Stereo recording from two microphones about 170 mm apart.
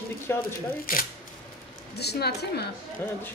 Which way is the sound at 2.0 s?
75° left (ahead or behind).